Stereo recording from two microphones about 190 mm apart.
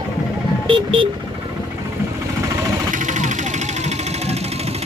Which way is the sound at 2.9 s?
40° right (ahead or behind).